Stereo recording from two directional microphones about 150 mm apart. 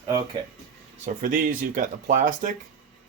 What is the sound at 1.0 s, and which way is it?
Speech, 60° right (ahead or behind).